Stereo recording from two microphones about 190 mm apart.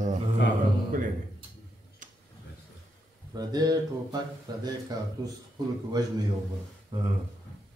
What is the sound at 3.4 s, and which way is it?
Speech, 20° right (ahead or behind).